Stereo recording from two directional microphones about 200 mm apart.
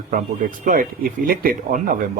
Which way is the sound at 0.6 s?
40° right (ahead or behind).